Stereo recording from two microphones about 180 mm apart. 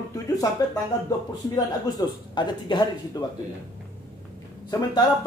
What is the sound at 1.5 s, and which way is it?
A man's voice, 20° left (ahead or behind).